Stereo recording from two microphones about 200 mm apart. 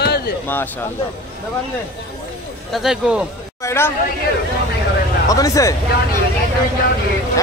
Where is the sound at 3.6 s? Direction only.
10° left (ahead or behind).